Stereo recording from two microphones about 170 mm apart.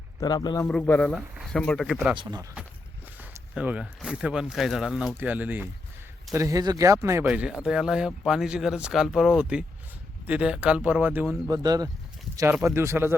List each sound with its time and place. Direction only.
0.2 s speech: 25° left (ahead or behind)
0.6 s a man's voice: 10° left (ahead or behind)
2.1 s speech: 25° right (ahead or behind)
3.2 s speech: 5° right (ahead or behind)
11.5 s speech: 20° right (ahead or behind)